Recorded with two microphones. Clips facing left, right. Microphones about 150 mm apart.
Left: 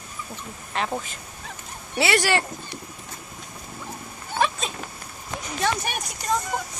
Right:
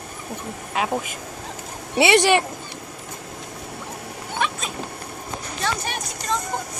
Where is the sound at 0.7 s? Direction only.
15° right (ahead or behind).